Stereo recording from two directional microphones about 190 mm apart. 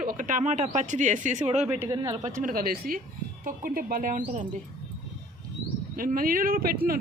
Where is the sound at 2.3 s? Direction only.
50° right (ahead or behind).